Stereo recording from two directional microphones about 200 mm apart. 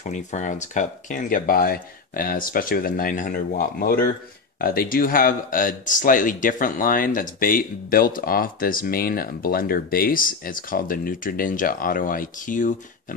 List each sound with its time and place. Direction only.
0.0 s speech: 35° left (ahead or behind)